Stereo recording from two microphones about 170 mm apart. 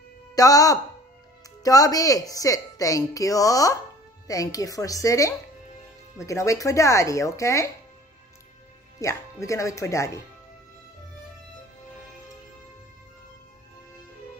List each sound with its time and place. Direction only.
0.4 s a woman's voice: 20° left (ahead or behind)
9.0 s speech: 20° left (ahead or behind)